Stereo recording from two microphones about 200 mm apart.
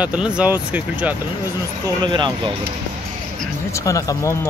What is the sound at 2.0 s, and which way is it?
Speech, 25° right (ahead or behind).